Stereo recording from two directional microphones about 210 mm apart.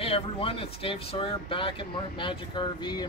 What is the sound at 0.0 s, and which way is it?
Speech, 25° left (ahead or behind).